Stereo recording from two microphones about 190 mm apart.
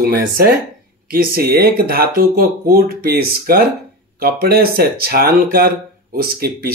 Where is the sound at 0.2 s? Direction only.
50° right (ahead or behind).